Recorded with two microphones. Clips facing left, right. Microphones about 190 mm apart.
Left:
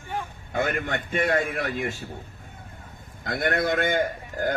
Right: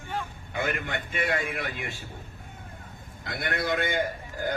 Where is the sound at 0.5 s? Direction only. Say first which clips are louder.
Left 4 dB; 45° left (ahead or behind).